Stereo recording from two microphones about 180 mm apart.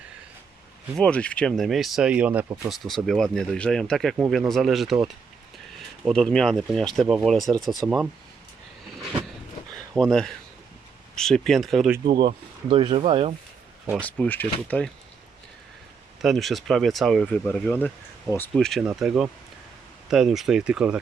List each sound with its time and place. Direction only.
0.9 s speech: 5° left (ahead or behind)
6.1 s speech: 5° left (ahead or behind)
9.9 s speech: 5° left (ahead or behind)
12.6 s speech: 30° right (ahead or behind)
14.0 s speech: 10° left (ahead or behind)
16.2 s speech: centre (ahead or behind)